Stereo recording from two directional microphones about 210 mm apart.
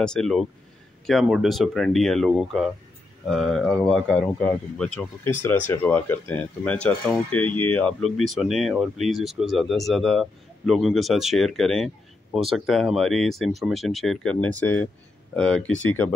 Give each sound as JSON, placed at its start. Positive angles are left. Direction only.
{"t": 0.0, "sound": "speech", "side_deg": 5}
{"t": 15.8, "sound": "speech", "side_deg": 85}